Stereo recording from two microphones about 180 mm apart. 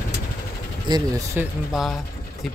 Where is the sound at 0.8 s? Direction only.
20° right (ahead or behind).